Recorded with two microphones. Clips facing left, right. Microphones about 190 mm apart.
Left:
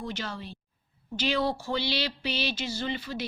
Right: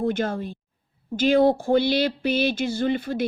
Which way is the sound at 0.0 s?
50° right (ahead or behind).